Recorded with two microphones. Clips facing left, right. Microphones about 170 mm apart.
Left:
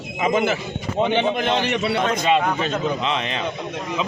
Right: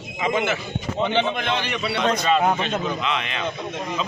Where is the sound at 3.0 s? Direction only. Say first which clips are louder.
Left 2 dB; 35° left (ahead or behind).